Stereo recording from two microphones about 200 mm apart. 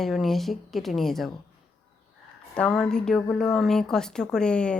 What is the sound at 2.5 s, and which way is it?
A woman's voice, 5° left (ahead or behind).